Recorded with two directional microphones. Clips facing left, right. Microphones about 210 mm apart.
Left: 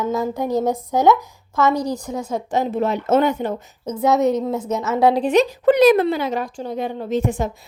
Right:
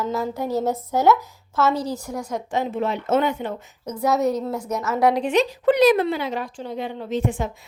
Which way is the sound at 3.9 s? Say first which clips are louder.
Left 4 dB; 20° left (ahead or behind).